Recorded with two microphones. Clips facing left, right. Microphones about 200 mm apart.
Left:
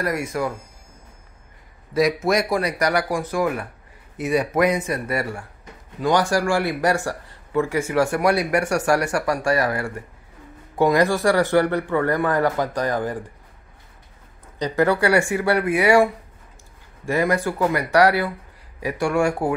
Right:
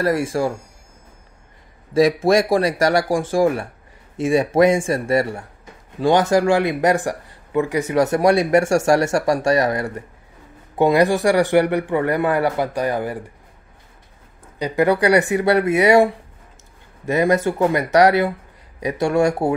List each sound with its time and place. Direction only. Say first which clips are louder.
0.0 s speech: right 5 dB; 30° right (ahead or behind)
2.0 s a man's voice: right 4 dB; 30° right (ahead or behind); by 13.2 s 10° right (ahead or behind)
14.6 s speech: right 2 dB; 15° right (ahead or behind)